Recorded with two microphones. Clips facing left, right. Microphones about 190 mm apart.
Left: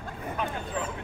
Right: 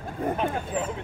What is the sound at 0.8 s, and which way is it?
Vehicle, 15° right (ahead or behind).